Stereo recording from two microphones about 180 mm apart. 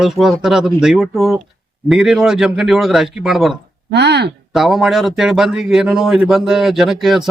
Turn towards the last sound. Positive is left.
turn(degrees=0)  # may be behind; listen again after turning